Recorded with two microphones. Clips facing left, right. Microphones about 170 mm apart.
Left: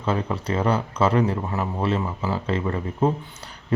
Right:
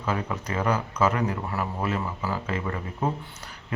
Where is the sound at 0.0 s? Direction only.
30° left (ahead or behind).